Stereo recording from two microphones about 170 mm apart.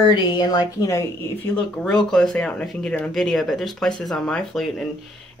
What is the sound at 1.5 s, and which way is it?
Speech, 5° left (ahead or behind).